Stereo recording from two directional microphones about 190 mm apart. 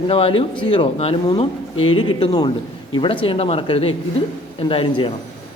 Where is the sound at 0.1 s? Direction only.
30° left (ahead or behind).